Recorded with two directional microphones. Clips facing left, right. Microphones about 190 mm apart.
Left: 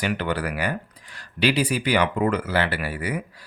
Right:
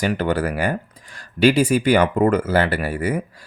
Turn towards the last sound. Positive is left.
turn(degrees=-45)  # may be behind; listen again after turning